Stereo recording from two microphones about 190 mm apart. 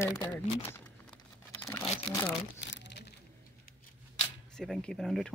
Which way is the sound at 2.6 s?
70° left (ahead or behind).